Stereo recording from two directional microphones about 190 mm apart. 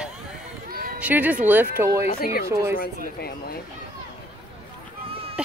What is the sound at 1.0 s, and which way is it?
Speech, 10° right (ahead or behind).